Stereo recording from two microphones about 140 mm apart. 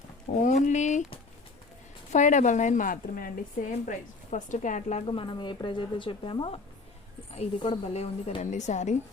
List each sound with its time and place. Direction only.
0.3 s a woman's voice: 60° left (ahead or behind)
2.1 s a woman's voice: 60° left (ahead or behind); by 3.3 s 85° left
3.7 s a woman's voice: 60° left (ahead or behind)
5.0 s a woman's voice: 35° left (ahead or behind); by 9.0 s 55° left (ahead or behind)